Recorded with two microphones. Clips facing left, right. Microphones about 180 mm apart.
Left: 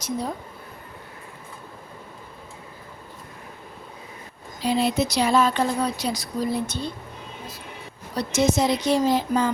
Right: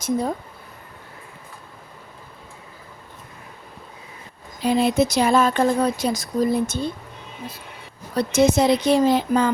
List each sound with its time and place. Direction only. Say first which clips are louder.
4.6 s speech: right 4 dB; 50° right (ahead or behind)
8.1 s speech: right 4 dB; 55° right (ahead or behind)